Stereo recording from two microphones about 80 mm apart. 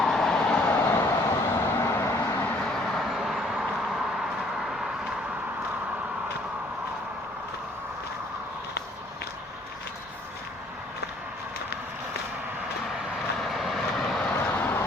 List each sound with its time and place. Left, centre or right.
0.0 s vehicle: centre
0.8 s vehicle: left
2.6 s vehicle: centre
13.1 s vehicle: centre
14.3 s vehicle: left